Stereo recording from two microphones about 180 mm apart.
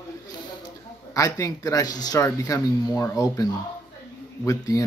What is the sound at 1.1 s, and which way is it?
A man's voice, 20° left (ahead or behind).